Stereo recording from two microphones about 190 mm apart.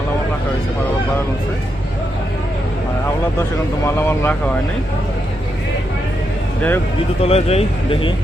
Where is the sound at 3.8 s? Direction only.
10° left (ahead or behind).